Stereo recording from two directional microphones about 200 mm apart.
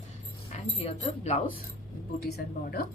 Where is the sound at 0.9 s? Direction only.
30° left (ahead or behind).